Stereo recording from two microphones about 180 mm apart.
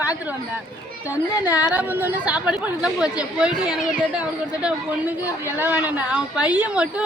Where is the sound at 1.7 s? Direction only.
10° right (ahead or behind).